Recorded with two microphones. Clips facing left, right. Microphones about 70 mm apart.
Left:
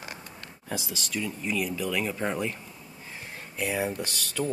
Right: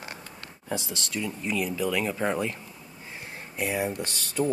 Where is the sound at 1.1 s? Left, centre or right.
Centre.